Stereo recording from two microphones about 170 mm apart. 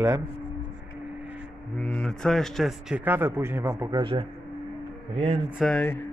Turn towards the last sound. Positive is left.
turn(degrees=5)  # may be behind; listen again after turning